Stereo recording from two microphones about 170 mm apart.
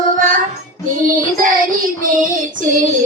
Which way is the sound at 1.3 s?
55° right (ahead or behind).